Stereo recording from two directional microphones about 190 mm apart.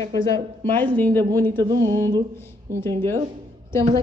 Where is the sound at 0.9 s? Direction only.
10° left (ahead or behind).